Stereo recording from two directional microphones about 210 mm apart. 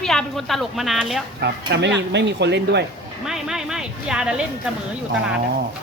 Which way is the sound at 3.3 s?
5° right (ahead or behind).